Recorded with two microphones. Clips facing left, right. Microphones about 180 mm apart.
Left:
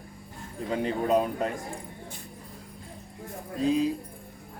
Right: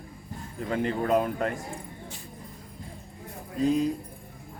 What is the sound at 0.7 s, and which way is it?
Speech, 15° left (ahead or behind).